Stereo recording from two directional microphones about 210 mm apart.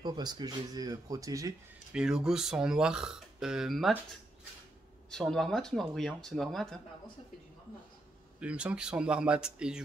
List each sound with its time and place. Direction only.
0.0 s speech: 20° right (ahead or behind)
2.0 s speech: 5° right (ahead or behind)
5.1 s speech: centre (ahead or behind)
8.4 s speech: 5° right (ahead or behind)